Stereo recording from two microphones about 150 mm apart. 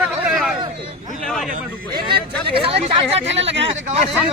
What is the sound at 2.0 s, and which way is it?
Speech, 90° right.